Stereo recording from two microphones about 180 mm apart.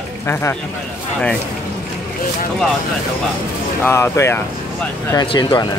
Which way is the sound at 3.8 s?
15° left (ahead or behind).